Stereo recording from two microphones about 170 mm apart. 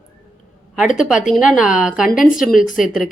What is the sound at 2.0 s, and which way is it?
Speech, 55° left (ahead or behind).